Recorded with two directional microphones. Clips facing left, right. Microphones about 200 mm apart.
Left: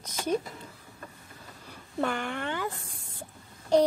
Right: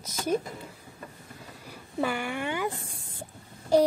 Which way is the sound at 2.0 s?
10° right (ahead or behind).